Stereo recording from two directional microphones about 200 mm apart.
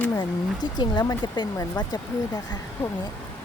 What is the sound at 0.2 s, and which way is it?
Speech, 20° left (ahead or behind).